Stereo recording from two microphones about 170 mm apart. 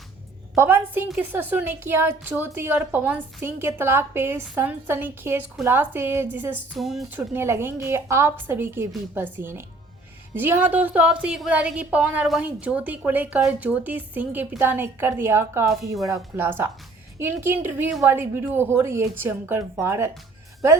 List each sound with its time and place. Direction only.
0.5 s speech: 15° right (ahead or behind)
6.7 s speech: centre (ahead or behind)
7.1 s speech: 10° right (ahead or behind)